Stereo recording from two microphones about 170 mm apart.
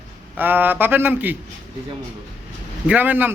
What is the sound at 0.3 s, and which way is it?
Speech, 10° right (ahead or behind).